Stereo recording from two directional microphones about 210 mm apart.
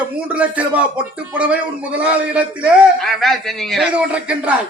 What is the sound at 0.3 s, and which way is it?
A man's voice, 5° right (ahead or behind).